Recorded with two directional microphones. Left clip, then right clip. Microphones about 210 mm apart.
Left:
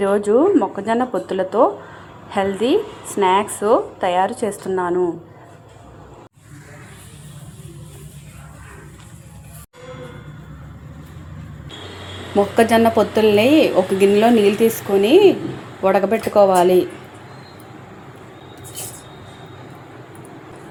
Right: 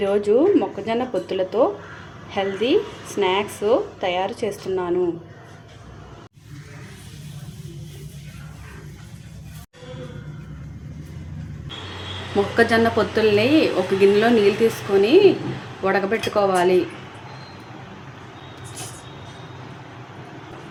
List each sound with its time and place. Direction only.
0.0 s a woman's voice: 15° left (ahead or behind)
12.5 s a woman's voice: 20° left (ahead or behind)